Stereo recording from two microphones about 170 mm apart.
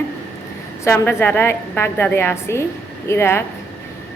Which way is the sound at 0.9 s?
10° left (ahead or behind).